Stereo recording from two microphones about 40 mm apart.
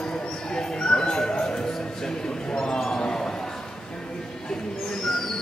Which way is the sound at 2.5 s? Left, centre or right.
Left.